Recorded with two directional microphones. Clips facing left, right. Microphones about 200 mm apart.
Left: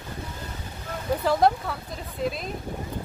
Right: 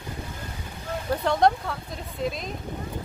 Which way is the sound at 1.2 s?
5° left (ahead or behind).